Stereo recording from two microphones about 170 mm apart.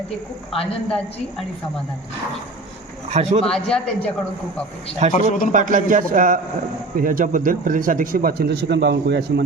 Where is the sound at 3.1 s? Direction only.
40° right (ahead or behind).